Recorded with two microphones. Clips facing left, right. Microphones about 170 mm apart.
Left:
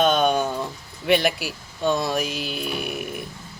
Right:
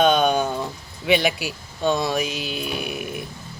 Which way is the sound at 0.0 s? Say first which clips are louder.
Right 1 dB; centre (ahead or behind).